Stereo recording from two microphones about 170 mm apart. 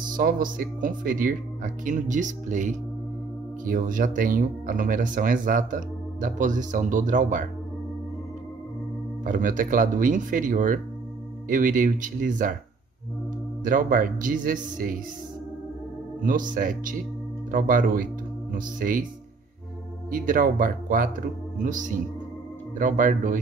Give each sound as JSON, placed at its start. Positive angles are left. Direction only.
{"t": 0.1, "sound": "speech", "side_deg": -55}
{"t": 9.2, "sound": "speech", "side_deg": -50}
{"t": 13.7, "sound": "speech", "side_deg": -55}
{"t": 16.2, "sound": "speech", "side_deg": -50}
{"t": 20.1, "sound": "speech", "side_deg": -55}